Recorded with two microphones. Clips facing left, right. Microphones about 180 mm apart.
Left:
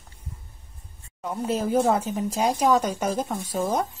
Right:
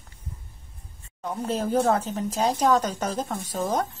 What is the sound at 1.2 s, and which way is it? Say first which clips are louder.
A woman's voice: left 1 dB; 5° left (ahead or behind).